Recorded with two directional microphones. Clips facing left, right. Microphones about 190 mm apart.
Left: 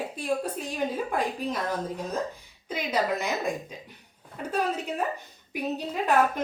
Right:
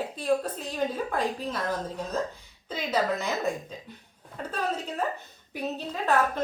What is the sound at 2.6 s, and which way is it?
Speech, 10° left (ahead or behind).